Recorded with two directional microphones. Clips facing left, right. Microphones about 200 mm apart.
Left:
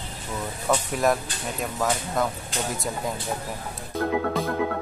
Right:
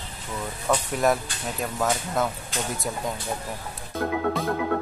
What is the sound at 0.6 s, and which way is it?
Speech, centre (ahead or behind).